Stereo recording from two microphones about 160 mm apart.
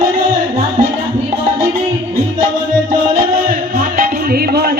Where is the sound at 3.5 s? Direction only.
55° right (ahead or behind); by 4.8 s 75° right (ahead or behind).